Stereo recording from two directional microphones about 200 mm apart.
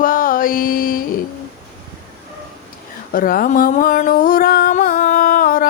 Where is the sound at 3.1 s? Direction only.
45° left (ahead or behind).